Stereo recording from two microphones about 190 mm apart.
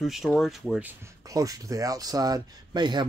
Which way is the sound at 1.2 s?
20° right (ahead or behind).